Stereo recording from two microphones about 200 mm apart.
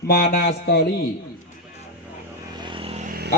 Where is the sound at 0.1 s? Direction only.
50° left (ahead or behind).